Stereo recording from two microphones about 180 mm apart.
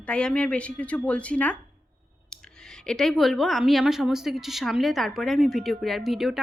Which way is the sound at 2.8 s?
Centre (ahead or behind).